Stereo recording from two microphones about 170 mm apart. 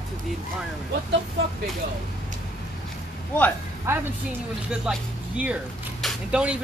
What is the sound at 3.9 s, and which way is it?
Speech, 15° right (ahead or behind).